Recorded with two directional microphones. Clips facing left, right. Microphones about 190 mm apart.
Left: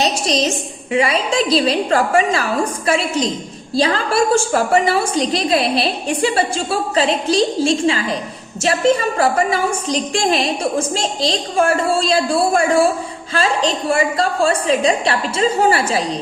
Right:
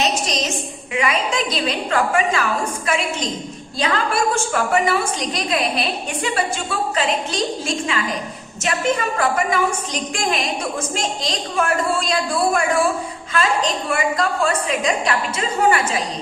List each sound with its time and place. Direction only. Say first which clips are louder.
0.0 s a woman's voice: left 4 dB; 30° left (ahead or behind)